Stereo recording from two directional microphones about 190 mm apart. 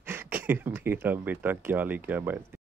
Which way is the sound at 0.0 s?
10° right (ahead or behind).